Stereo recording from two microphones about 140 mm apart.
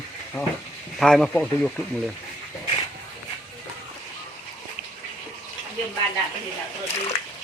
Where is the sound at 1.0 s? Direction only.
Centre (ahead or behind).